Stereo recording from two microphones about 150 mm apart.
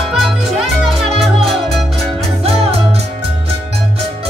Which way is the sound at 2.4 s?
45° right (ahead or behind).